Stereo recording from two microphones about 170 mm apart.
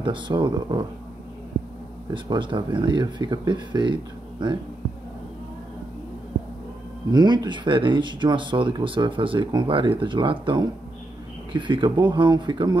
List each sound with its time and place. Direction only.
0.0 s speech: 25° right (ahead or behind)
2.1 s speech: 30° right (ahead or behind)
7.1 s speech: 25° right (ahead or behind)